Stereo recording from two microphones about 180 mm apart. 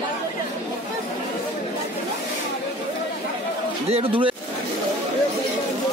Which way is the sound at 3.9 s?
30° right (ahead or behind).